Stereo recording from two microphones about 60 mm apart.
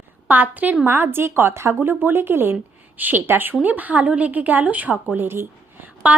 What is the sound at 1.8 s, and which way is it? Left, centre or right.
A woman's voice, right.